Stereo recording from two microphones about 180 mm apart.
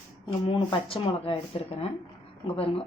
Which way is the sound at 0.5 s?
30° left (ahead or behind).